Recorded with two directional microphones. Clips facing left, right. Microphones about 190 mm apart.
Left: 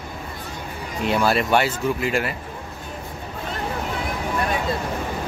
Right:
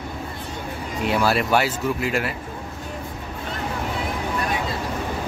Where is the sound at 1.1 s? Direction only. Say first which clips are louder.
Left 1 dB; 5° right (ahead or behind).